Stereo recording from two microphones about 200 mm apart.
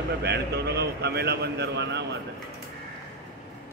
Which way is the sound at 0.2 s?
55° right (ahead or behind).